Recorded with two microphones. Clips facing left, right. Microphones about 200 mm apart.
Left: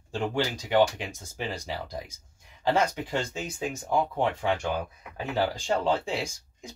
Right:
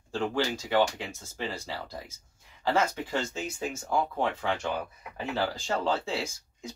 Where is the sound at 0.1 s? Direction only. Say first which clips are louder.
Even; 15° left (ahead or behind).